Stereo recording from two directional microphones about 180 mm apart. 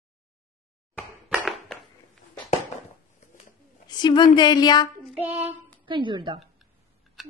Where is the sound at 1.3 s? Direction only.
Centre (ahead or behind).